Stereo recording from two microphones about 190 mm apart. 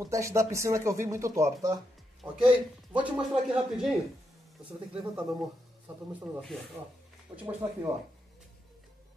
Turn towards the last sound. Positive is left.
turn(degrees=-15)  # may be behind; listen again after turning